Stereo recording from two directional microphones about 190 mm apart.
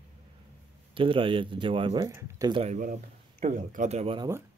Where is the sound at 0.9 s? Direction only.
25° right (ahead or behind).